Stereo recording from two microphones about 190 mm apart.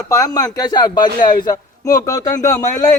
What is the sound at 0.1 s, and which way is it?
A man's voice, 20° left (ahead or behind).